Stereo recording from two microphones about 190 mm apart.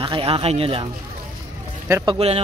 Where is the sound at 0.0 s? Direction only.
30° right (ahead or behind).